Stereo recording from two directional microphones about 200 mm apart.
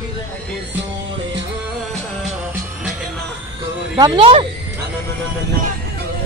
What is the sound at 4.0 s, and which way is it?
Speech, 25° right (ahead or behind).